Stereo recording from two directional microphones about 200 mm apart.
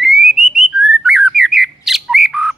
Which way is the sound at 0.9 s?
5° right (ahead or behind).